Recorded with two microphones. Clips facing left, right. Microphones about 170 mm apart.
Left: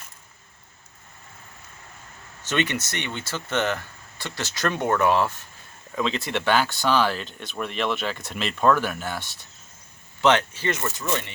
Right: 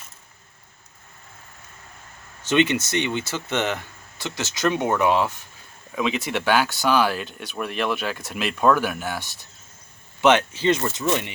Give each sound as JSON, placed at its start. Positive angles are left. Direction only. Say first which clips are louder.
{"t": 3.0, "sound": "speech", "louder": "right 6 dB", "side_deg": -15}